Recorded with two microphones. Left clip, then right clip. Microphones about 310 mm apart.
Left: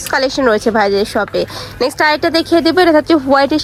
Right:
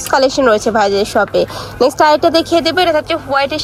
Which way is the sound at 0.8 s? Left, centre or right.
Centre.